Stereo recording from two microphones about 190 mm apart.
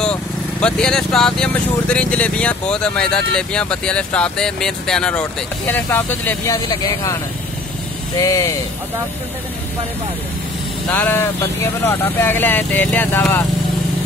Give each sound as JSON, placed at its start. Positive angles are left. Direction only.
{"t": 0.0, "sound": "speech", "side_deg": 5}
{"t": 8.2, "sound": "speech", "side_deg": 15}
{"t": 10.9, "sound": "speech", "side_deg": 10}